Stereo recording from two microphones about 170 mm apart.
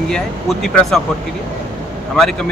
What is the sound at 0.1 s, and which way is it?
Speech, 5° left (ahead or behind).